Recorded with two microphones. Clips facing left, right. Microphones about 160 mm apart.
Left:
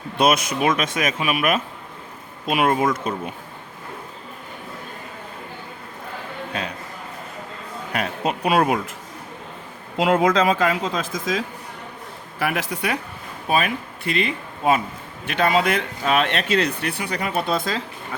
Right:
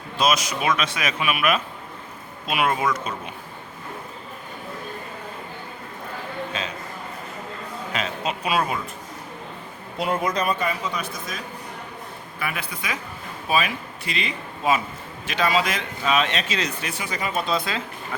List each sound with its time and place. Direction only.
0.2 s speech: 55° left (ahead or behind)
6.5 s a man's voice: 60° left (ahead or behind)
7.9 s speech: 55° left (ahead or behind)
10.0 s speech: 90° left
12.4 s speech: 80° left
13.5 s speech: 55° left (ahead or behind)